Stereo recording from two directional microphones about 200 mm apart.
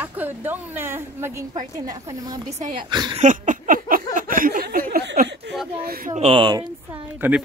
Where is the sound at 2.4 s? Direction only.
35° right (ahead or behind).